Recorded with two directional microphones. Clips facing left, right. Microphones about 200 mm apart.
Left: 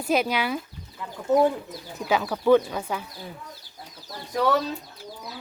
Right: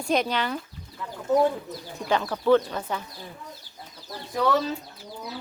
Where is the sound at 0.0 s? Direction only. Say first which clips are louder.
Left 1 dB; 5° left (ahead or behind).